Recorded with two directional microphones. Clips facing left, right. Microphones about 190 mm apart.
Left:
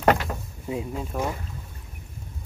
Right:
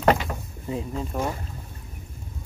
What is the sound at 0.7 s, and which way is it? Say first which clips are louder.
Speech: even; 5° left (ahead or behind).